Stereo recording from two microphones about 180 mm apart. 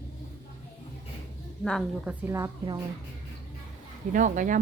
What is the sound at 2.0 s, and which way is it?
Speech, 10° right (ahead or behind).